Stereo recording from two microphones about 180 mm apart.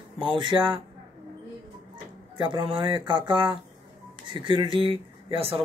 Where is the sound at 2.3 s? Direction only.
25° right (ahead or behind).